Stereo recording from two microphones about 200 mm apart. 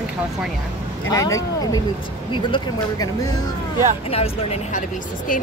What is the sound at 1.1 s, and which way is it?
Speech, 15° left (ahead or behind).